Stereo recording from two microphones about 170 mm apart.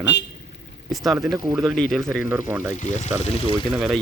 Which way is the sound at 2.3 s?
15° right (ahead or behind).